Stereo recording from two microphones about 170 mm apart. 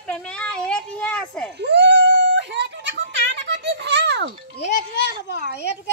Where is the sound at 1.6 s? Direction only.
90° right.